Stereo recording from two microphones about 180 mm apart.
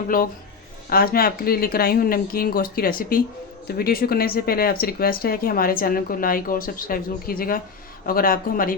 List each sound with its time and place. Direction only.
0.1 s speech: 50° left (ahead or behind)